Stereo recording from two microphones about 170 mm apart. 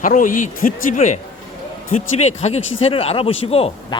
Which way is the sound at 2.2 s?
40° left (ahead or behind).